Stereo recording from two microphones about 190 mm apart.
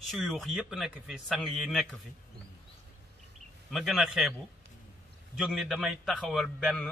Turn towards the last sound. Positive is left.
turn(degrees=5)  # may be behind; listen again after turning